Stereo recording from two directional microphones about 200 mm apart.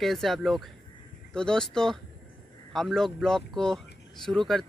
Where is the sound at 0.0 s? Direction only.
Centre (ahead or behind).